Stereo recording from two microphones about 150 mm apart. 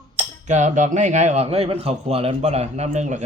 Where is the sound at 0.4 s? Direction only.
50° right (ahead or behind).